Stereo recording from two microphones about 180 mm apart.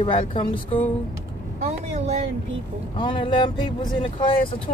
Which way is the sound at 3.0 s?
30° left (ahead or behind).